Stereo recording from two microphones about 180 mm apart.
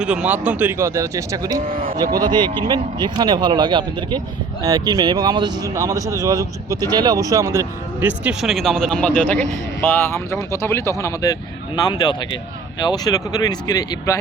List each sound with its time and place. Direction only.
0.0 s speech: 5° right (ahead or behind)
1.8 s speech: 30° right (ahead or behind); by 14.2 s 20° left (ahead or behind)